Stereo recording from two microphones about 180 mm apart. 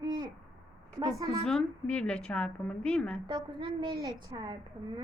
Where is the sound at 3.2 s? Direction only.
25° right (ahead or behind).